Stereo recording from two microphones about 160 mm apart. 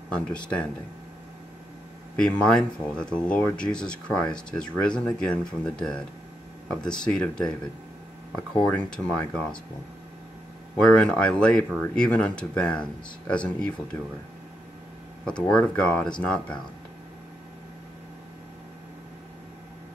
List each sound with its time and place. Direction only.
0.1 s speech: 5° left (ahead or behind)
2.1 s speech: 5° left (ahead or behind)
8.6 s speech: 5° left (ahead or behind)
10.8 s speech: 5° left (ahead or behind)
15.5 s speech: 5° left (ahead or behind)